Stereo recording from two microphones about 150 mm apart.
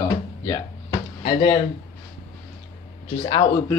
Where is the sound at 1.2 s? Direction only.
40° left (ahead or behind).